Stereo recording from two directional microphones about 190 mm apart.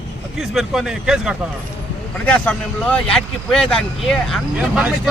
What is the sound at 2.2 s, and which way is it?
Speech, 10° left (ahead or behind).